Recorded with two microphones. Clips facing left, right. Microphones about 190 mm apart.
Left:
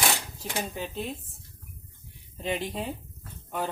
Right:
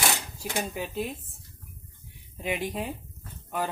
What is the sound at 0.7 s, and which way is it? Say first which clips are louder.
Speech: right 2 dB; 10° right (ahead or behind).